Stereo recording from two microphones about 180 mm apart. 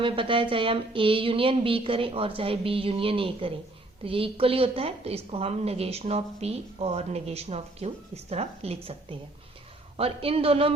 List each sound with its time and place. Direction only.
0.0 s a woman's voice: 30° right (ahead or behind)